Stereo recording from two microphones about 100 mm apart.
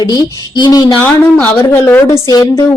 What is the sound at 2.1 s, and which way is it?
Speech, 35° left (ahead or behind).